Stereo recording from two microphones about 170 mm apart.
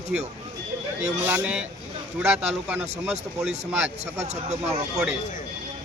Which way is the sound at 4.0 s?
40° right (ahead or behind).